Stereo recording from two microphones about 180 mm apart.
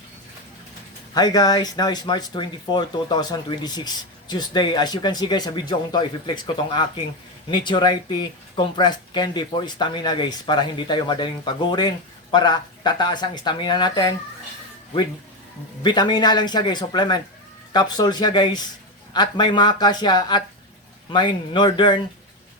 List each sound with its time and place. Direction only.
1.1 s speech: 20° left (ahead or behind)
15.8 s speech: 25° left (ahead or behind)